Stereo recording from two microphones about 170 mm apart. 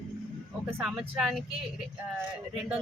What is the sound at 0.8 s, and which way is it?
Speech, 5° right (ahead or behind).